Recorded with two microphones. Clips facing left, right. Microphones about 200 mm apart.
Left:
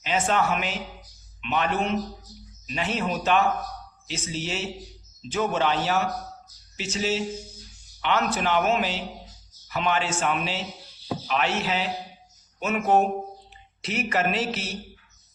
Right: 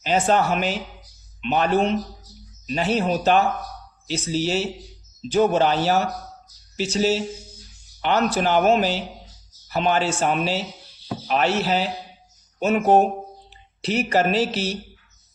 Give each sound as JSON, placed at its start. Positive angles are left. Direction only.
{"t": 0.0, "sound": "a man's voice", "side_deg": -35}